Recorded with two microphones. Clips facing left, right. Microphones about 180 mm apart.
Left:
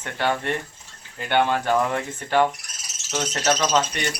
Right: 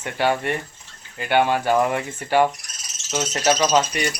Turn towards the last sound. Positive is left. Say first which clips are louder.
# right 3 dB
turn(degrees=-10)  # may be behind; listen again after turning